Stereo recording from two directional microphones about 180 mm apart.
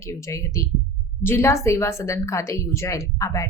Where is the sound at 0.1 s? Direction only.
15° left (ahead or behind).